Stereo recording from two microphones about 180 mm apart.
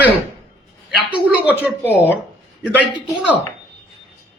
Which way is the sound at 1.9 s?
10° left (ahead or behind).